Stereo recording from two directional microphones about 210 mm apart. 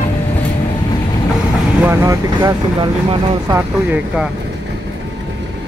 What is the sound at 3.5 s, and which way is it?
Speech, 10° right (ahead or behind).